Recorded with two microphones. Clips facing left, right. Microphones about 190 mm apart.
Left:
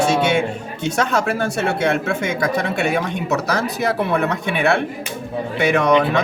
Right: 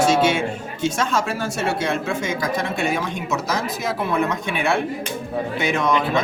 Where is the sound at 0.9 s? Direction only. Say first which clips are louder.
Left 7 dB; 65° left (ahead or behind).